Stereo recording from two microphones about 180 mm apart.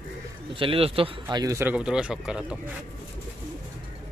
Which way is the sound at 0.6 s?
30° right (ahead or behind).